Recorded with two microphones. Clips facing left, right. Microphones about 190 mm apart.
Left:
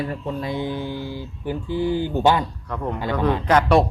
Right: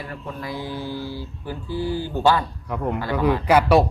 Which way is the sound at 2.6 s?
10° right (ahead or behind).